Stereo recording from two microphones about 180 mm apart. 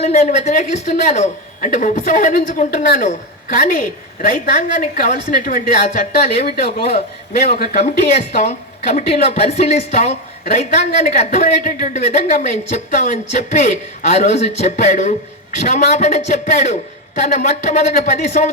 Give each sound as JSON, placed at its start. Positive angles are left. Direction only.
{"t": 0.0, "sound": "a woman's voice", "side_deg": 35}
{"t": 6.6, "sound": "a man's voice", "side_deg": 60}
{"t": 9.6, "sound": "a woman's voice", "side_deg": 40}